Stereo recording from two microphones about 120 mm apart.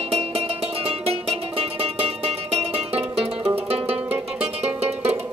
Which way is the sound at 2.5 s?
55° right (ahead or behind).